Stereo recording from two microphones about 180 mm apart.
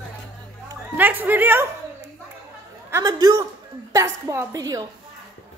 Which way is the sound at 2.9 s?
20° right (ahead or behind).